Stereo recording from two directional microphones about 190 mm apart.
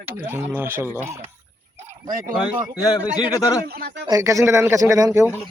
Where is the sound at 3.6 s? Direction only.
55° right (ahead or behind).